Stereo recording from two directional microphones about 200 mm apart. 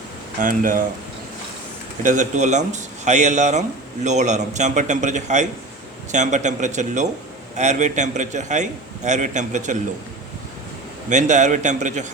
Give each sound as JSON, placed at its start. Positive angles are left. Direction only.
{"t": 0.3, "sound": "speech", "side_deg": -45}
{"t": 2.0, "sound": "speech", "side_deg": -40}
{"t": 11.1, "sound": "speech", "side_deg": -35}